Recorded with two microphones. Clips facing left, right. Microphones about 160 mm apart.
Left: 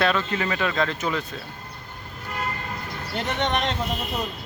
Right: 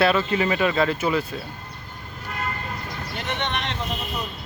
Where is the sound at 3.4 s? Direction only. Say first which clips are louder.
Left 5 dB; 40° left (ahead or behind).